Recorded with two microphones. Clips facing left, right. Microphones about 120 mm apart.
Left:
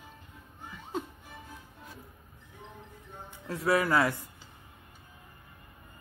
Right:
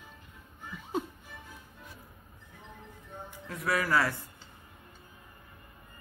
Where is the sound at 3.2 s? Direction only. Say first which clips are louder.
Left 5 dB; 30° left (ahead or behind).